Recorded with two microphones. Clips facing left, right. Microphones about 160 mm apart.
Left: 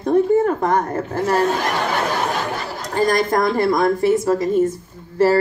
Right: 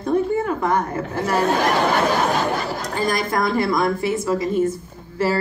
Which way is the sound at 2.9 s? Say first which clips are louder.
Left 5 dB; 40° left (ahead or behind).